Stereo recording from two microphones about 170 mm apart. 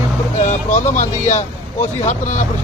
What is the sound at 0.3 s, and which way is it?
Speech, 45° left (ahead or behind).